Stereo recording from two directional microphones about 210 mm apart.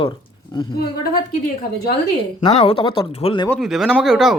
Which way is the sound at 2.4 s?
25° left (ahead or behind).